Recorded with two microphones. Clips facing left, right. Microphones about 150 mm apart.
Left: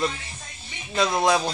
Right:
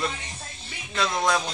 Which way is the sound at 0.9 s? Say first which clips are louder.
Left 4 dB; 25° left (ahead or behind).